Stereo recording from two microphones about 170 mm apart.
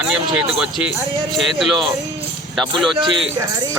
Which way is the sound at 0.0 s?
5° right (ahead or behind).